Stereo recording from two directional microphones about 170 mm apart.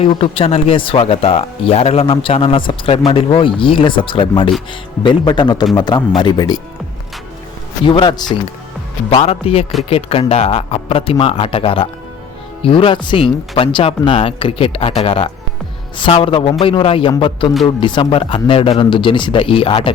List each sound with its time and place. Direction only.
0.0 s speech: 35° left (ahead or behind)
7.9 s speech: 25° left (ahead or behind)
9.2 s speech: 35° left (ahead or behind)